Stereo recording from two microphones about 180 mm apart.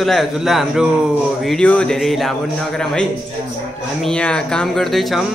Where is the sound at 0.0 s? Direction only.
Centre (ahead or behind).